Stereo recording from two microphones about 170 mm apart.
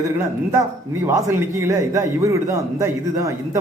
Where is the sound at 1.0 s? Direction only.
15° right (ahead or behind).